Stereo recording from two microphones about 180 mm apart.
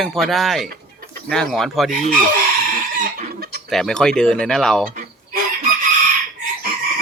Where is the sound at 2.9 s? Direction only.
50° right (ahead or behind).